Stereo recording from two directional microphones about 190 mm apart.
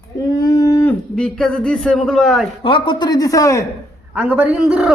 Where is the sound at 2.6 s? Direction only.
25° left (ahead or behind).